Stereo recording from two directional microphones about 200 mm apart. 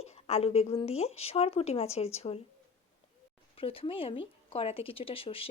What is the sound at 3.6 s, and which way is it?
A woman's voice, 25° left (ahead or behind).